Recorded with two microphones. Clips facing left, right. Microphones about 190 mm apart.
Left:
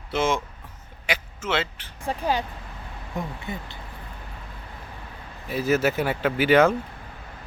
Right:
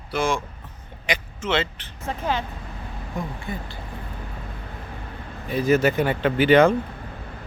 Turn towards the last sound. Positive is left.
turn(degrees=5)  # may be behind; listen again after turning